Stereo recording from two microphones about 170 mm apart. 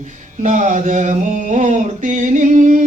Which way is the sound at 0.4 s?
45° right (ahead or behind).